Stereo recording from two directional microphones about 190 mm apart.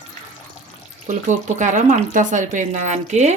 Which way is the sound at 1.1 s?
40° right (ahead or behind).